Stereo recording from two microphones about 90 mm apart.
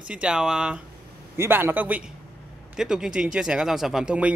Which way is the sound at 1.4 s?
25° right (ahead or behind).